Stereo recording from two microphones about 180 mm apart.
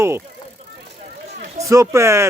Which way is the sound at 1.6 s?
15° right (ahead or behind).